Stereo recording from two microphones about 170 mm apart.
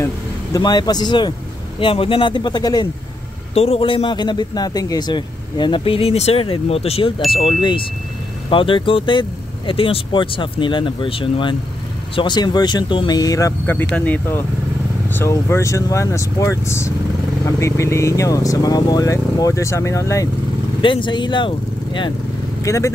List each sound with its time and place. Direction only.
0.0 s speech: 20° left (ahead or behind)
3.5 s a man's voice: 35° left (ahead or behind); by 20.2 s 20° left (ahead or behind)
20.8 s speech: 30° left (ahead or behind)
22.6 s speech: 15° left (ahead or behind)